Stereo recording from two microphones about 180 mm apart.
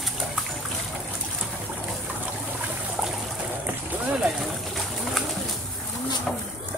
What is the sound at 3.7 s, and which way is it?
Bird, centre (ahead or behind).